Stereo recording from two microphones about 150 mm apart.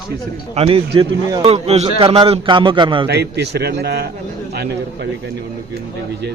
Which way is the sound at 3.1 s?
90° right.